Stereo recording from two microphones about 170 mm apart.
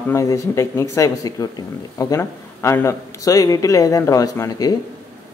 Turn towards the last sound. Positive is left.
turn(degrees=20)  # may be behind; listen again after turning